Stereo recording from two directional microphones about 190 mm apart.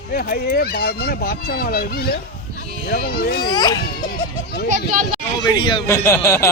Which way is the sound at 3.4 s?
20° left (ahead or behind).